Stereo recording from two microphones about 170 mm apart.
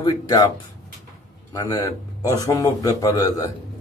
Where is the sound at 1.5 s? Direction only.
25° left (ahead or behind).